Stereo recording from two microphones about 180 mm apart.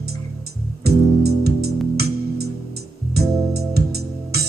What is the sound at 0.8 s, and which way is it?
Music, 60° right (ahead or behind).